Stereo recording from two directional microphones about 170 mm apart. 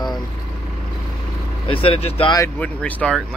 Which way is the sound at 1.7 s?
30° left (ahead or behind).